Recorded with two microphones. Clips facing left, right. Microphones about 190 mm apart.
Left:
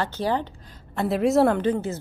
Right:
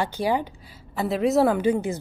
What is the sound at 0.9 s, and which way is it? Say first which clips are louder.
Speech: left 1 dB; centre (ahead or behind).